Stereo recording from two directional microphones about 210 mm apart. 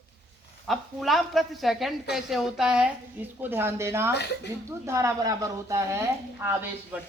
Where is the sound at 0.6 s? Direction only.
Centre (ahead or behind).